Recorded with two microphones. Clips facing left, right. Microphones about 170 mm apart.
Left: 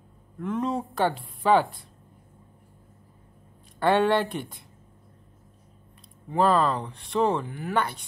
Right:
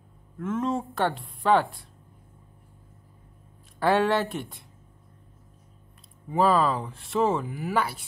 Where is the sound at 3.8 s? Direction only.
Centre (ahead or behind).